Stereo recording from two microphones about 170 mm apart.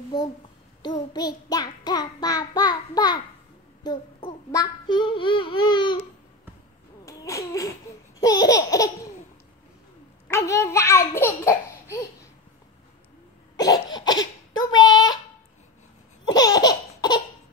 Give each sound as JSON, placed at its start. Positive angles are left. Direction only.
{"t": 1.1, "sound": "child singing", "side_deg": 25}
{"t": 3.8, "sound": "speech", "side_deg": 25}
{"t": 4.5, "sound": "child singing", "side_deg": 25}
{"t": 7.1, "sound": "a sound", "side_deg": 20}
{"t": 8.2, "sound": "child singing", "side_deg": 20}
{"t": 10.2, "sound": "a child's voice", "side_deg": 15}
{"t": 13.6, "sound": "a sound", "side_deg": 25}
{"t": 16.3, "sound": "laughter", "side_deg": 25}